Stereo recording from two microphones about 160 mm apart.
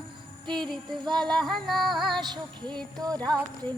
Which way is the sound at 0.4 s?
Centre (ahead or behind).